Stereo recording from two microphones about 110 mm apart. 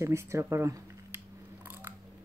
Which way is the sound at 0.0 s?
25° right (ahead or behind).